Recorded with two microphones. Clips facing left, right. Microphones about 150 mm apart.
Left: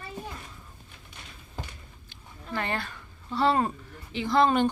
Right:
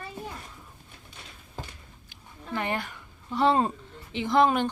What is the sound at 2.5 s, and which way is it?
A woman's voice, 15° right (ahead or behind).